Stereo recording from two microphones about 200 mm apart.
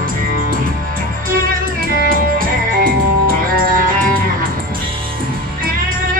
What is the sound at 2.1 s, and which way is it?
Music, 45° right (ahead or behind).